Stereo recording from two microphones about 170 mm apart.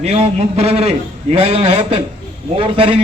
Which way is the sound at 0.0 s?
35° right (ahead or behind).